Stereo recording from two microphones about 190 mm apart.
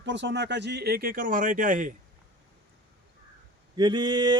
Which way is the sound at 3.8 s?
25° right (ahead or behind).